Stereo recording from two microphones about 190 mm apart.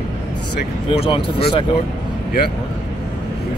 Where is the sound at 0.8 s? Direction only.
30° left (ahead or behind).